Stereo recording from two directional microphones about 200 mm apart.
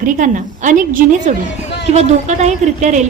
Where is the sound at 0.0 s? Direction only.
40° right (ahead or behind).